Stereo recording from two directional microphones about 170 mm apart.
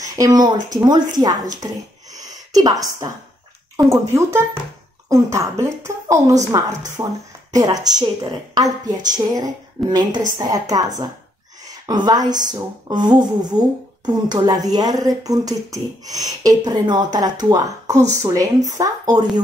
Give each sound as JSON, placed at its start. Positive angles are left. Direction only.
{"t": 0.1, "sound": "speech", "side_deg": -20}
{"t": 2.1, "sound": "a sound", "side_deg": -20}
{"t": 3.7, "sound": "a woman's voice", "side_deg": -15}